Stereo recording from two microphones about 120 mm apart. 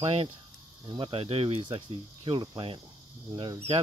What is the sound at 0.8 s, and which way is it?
Speech, 40° right (ahead or behind).